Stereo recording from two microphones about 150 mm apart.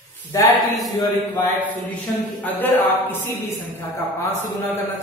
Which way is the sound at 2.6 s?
15° left (ahead or behind).